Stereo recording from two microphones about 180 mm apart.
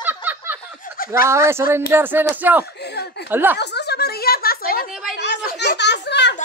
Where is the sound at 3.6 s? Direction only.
65° left (ahead or behind).